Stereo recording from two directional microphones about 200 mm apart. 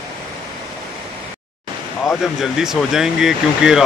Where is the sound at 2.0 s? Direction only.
Centre (ahead or behind).